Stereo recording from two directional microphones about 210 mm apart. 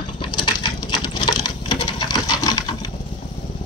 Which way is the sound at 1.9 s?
20° left (ahead or behind).